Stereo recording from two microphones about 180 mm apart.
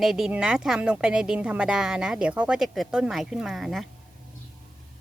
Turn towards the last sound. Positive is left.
turn(degrees=0)  # may be behind; listen again after turning